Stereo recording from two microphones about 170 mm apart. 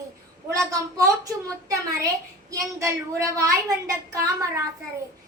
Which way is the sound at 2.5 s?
20° right (ahead or behind).